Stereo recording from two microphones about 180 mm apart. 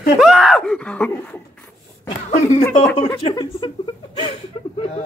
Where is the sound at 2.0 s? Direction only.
40° left (ahead or behind).